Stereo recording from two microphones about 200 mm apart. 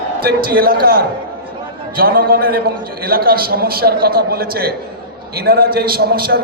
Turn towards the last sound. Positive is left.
turn(degrees=-50)  # may be behind; listen again after turning